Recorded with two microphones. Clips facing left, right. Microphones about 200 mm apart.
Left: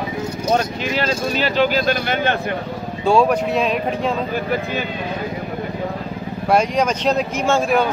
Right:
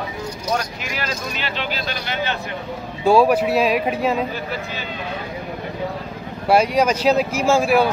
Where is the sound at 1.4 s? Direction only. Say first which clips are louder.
Left 13 dB; 45° left (ahead or behind).